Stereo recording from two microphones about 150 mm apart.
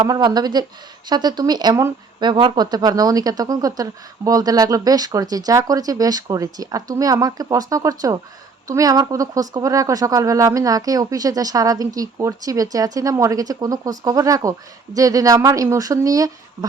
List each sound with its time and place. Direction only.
0.0 s speech: 25° right (ahead or behind)